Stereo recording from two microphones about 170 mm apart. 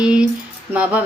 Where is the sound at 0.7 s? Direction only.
10° right (ahead or behind).